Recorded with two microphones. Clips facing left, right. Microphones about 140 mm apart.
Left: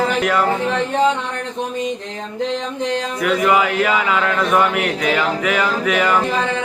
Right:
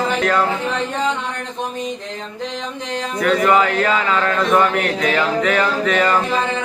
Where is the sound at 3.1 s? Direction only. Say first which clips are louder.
Right 2 dB; 5° left (ahead or behind).